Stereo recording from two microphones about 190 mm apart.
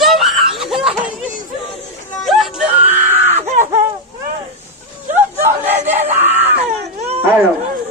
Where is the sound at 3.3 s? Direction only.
40° right (ahead or behind).